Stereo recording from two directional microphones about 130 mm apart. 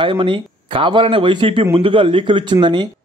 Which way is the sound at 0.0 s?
40° right (ahead or behind).